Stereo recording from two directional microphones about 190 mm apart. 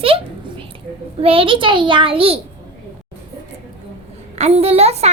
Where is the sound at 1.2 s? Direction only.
30° right (ahead or behind).